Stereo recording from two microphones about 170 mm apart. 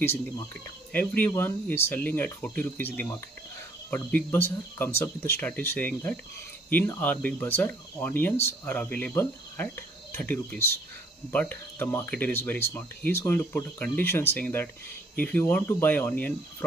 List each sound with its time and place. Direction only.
0.9 s speech: 10° left (ahead or behind)